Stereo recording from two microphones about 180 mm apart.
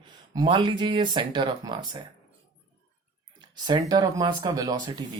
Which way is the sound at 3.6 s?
25° right (ahead or behind).